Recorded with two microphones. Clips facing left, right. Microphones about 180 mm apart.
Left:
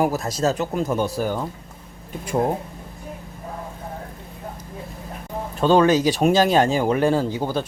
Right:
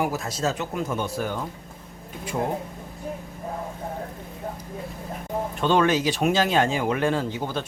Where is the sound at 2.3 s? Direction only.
40° left (ahead or behind).